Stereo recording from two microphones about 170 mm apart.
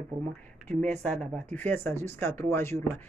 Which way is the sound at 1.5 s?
10° left (ahead or behind).